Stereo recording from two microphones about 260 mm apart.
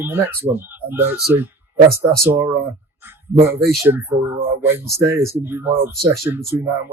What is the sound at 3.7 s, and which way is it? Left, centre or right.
Speech, centre.